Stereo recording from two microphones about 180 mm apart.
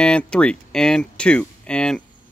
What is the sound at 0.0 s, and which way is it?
Speech, 5° left (ahead or behind).